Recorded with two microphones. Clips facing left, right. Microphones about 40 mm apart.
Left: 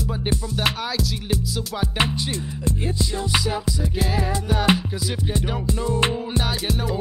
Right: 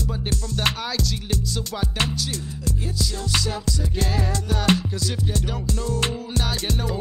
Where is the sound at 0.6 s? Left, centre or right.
Centre.